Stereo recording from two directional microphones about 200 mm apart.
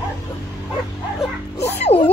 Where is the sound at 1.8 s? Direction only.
30° left (ahead or behind).